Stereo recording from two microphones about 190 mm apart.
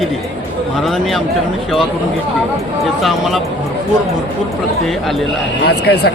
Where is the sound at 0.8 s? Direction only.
Centre (ahead or behind).